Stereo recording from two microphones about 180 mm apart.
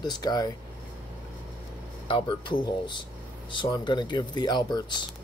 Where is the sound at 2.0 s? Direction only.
30° left (ahead or behind).